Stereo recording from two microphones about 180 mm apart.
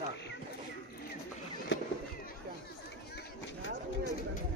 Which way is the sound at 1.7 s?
90° left.